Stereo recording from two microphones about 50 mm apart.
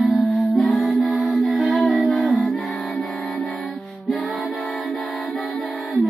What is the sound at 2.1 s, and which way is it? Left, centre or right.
Music, centre.